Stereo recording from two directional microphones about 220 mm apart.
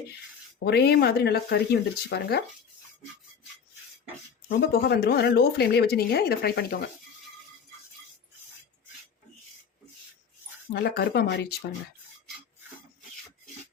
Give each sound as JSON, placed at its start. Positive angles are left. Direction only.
{"t": 0.6, "sound": "speech", "side_deg": 45}
{"t": 4.4, "sound": "speech", "side_deg": 45}
{"t": 10.7, "sound": "speech", "side_deg": 45}